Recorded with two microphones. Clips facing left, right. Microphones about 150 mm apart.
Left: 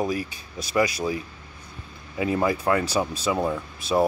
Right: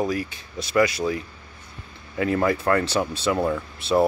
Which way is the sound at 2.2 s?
15° left (ahead or behind).